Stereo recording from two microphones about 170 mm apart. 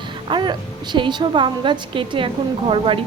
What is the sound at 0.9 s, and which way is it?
A woman's voice, 30° right (ahead or behind).